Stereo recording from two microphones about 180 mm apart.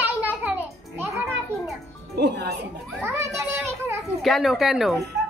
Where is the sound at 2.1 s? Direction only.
65° right (ahead or behind).